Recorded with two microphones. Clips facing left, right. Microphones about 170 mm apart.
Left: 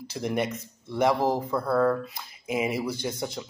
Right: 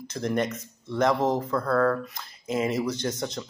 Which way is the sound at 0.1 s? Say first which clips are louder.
Right 1 dB; 10° left (ahead or behind).